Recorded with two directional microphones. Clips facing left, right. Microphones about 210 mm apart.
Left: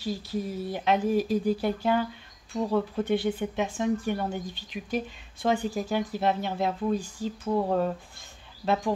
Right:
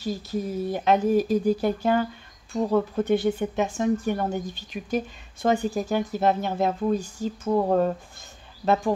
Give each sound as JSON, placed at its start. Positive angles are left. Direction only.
{"t": 0.0, "sound": "speech", "side_deg": -45}